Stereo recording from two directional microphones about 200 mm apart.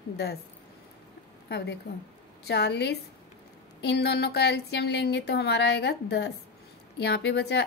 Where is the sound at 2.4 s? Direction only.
55° left (ahead or behind).